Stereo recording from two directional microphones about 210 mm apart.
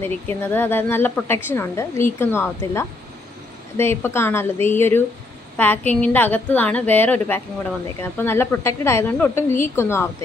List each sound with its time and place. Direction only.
0.0 s a woman's voice: 10° left (ahead or behind)